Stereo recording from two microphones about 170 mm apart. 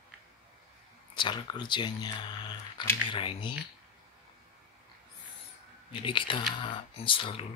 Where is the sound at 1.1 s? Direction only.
25° left (ahead or behind).